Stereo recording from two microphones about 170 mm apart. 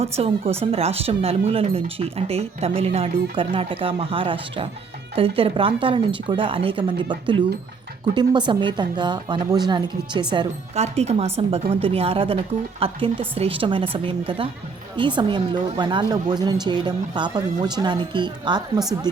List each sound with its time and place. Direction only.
0.0 s speech: 35° right (ahead or behind)
10.8 s speech: 40° right (ahead or behind)